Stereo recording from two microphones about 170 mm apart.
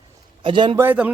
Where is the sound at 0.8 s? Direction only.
10° right (ahead or behind).